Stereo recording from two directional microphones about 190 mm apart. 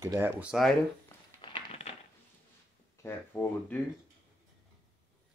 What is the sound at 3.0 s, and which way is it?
Speech, 10° left (ahead or behind).